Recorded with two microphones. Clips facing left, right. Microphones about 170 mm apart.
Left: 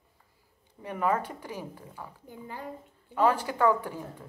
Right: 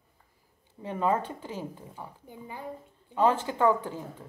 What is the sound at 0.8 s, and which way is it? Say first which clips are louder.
Speech: right 1 dB; 25° right (ahead or behind).